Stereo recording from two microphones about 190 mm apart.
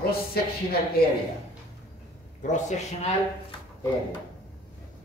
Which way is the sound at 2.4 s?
40° left (ahead or behind).